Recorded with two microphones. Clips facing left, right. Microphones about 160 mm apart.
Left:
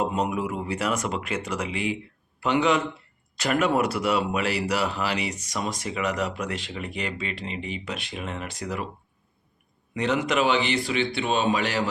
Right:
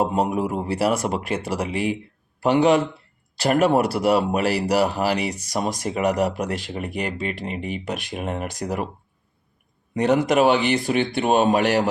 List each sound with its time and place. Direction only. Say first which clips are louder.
0.1 s speech: right 4 dB; 45° right (ahead or behind)
9.9 s speech: right 6 dB; 45° right (ahead or behind)